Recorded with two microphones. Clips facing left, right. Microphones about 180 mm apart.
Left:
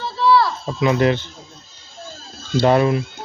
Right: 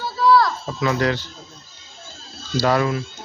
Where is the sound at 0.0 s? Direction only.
Centre (ahead or behind); by 1.2 s 20° left (ahead or behind).